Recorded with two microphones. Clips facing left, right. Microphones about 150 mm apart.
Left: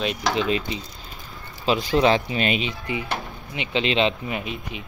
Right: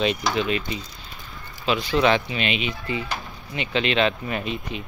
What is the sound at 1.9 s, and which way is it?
Speech, 35° left (ahead or behind).